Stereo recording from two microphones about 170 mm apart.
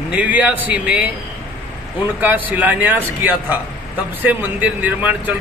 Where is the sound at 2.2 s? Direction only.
10° right (ahead or behind).